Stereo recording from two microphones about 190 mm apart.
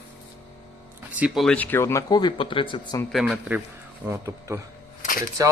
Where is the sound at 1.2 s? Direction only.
5° right (ahead or behind); by 3.0 s 25° left (ahead or behind).